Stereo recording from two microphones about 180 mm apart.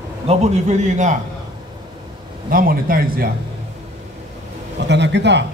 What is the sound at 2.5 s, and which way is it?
Speech, 55° right (ahead or behind).